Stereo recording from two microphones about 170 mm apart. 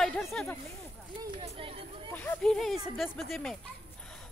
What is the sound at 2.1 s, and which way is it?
Speech, 5° left (ahead or behind).